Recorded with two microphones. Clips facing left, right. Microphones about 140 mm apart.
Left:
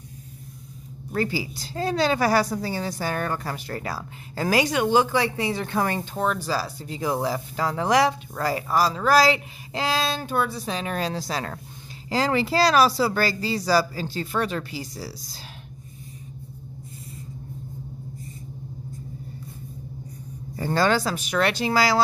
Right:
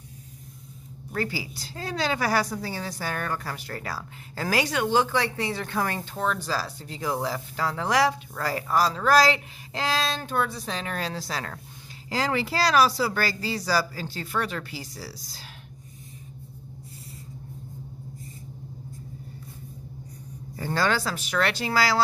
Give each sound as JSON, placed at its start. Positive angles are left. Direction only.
{"t": 1.1, "sound": "a woman's voice", "side_deg": 25}
{"t": 12.1, "sound": "speech", "side_deg": 30}
{"t": 20.5, "sound": "speech", "side_deg": 30}